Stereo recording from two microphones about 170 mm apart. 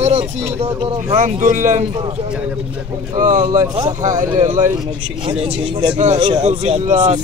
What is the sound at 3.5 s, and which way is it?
Speech, 20° right (ahead or behind).